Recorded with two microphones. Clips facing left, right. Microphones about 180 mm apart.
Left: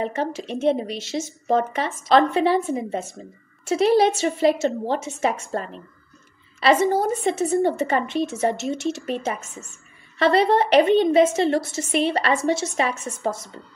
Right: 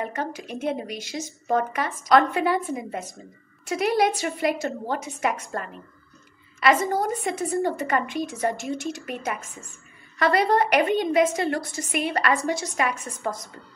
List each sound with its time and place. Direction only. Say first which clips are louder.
0.0 s a woman's voice: left 5 dB; 25° left (ahead or behind)